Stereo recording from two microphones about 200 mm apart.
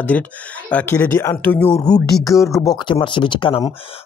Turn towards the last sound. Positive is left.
turn(degrees=25)  # may be behind; listen again after turning